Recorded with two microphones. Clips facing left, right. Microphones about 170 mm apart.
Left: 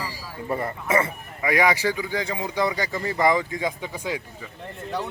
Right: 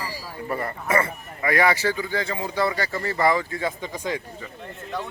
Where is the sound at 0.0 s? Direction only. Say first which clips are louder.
Right 1 dB; 20° left (ahead or behind).